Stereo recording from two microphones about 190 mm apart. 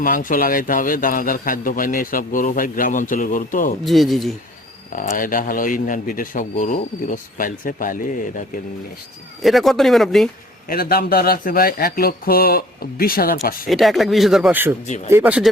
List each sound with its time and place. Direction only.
0.0 s speech: 45° left (ahead or behind)
3.8 s speech: centre (ahead or behind)
4.9 s speech: 45° left (ahead or behind)
9.4 s speech: centre (ahead or behind)
10.7 s speech: 55° left (ahead or behind)
13.7 s speech: centre (ahead or behind)